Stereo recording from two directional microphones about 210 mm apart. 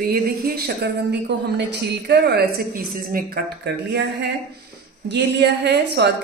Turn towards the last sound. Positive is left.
turn(degrees=-55)  # may be behind; listen again after turning